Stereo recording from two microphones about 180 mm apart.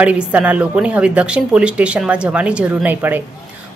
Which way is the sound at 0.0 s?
10° right (ahead or behind).